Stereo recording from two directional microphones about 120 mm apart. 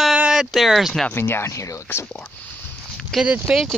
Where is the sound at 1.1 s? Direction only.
20° left (ahead or behind).